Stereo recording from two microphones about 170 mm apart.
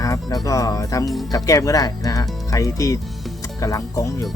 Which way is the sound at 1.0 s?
Centre (ahead or behind).